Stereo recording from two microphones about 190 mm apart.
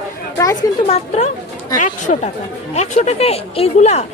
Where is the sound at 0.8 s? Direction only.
30° left (ahead or behind).